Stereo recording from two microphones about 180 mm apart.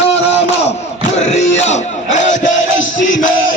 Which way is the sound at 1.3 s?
40° left (ahead or behind).